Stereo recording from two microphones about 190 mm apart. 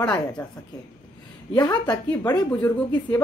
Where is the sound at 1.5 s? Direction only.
20° left (ahead or behind).